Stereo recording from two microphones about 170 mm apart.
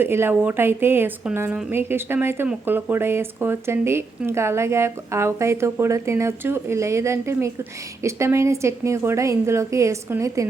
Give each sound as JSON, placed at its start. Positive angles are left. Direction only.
{"t": 0.0, "sound": "a woman's voice", "side_deg": -15}